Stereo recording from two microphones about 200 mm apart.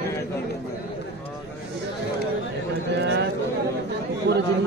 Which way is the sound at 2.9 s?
55° right (ahead or behind).